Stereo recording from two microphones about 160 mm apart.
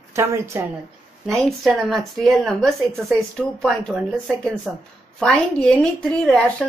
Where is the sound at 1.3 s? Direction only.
Centre (ahead or behind).